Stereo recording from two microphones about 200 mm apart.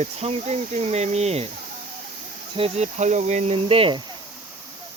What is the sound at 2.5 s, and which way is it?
Speech, 30° right (ahead or behind).